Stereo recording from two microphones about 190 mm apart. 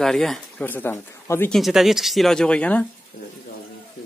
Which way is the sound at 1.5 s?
Centre (ahead or behind).